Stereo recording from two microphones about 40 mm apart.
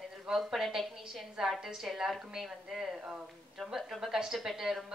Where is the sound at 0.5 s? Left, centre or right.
Centre.